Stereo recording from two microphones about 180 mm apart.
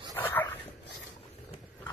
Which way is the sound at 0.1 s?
10° left (ahead or behind).